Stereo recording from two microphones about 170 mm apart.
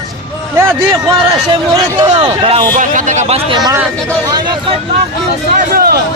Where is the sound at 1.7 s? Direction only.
25° right (ahead or behind).